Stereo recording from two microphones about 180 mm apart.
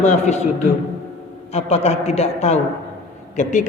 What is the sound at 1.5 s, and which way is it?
A man's voice, 35° left (ahead or behind).